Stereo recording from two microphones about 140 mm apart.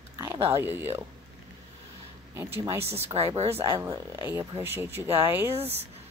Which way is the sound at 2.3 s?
20° right (ahead or behind).